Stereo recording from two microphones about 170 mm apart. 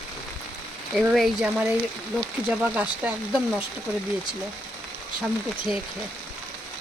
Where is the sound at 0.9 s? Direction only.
Centre (ahead or behind).